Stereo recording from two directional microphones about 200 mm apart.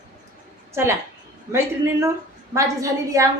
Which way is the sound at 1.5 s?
15° right (ahead or behind).